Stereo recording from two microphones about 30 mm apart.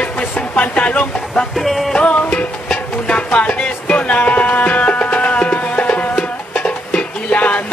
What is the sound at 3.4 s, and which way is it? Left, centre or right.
Music, left.